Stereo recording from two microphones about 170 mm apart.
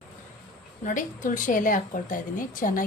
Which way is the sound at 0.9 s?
50° left (ahead or behind).